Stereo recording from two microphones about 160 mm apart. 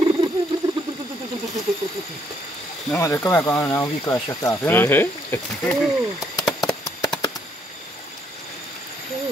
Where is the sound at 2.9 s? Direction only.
15° left (ahead or behind).